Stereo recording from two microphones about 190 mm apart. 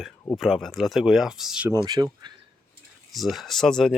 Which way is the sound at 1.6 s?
20° right (ahead or behind).